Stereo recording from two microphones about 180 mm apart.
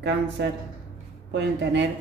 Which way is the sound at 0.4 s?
75° right (ahead or behind).